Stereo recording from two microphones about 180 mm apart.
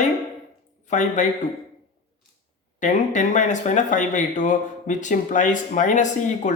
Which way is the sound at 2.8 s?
45° left (ahead or behind).